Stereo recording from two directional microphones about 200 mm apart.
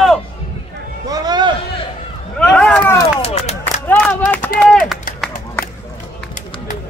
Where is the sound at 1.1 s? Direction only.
20° right (ahead or behind).